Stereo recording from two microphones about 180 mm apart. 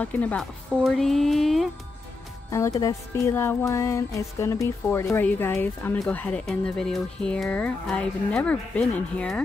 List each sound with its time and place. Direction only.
0.0 s speech: 10° left (ahead or behind)
2.5 s speech: 15° left (ahead or behind)